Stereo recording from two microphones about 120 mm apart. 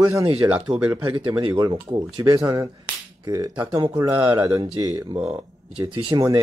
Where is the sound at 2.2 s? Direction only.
30° right (ahead or behind).